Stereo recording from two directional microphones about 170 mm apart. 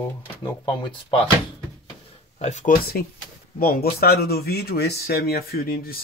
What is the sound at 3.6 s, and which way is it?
Speech, 65° left (ahead or behind).